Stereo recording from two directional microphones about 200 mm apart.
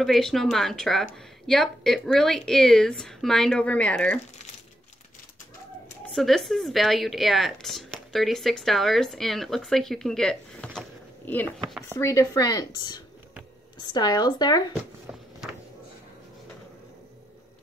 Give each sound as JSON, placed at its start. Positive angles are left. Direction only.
{"t": 0.0, "sound": "speech", "side_deg": 0}
{"t": 6.1, "sound": "speech", "side_deg": 0}